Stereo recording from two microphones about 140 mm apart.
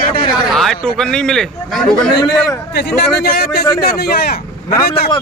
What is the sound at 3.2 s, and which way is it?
Speech, 90° left.